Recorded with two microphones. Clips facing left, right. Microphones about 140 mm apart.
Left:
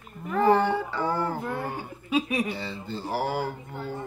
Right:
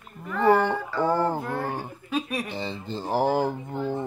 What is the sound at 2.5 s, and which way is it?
Speech, 20° right (ahead or behind).